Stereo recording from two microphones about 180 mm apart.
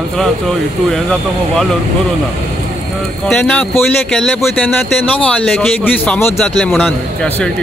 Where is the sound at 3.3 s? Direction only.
5° left (ahead or behind).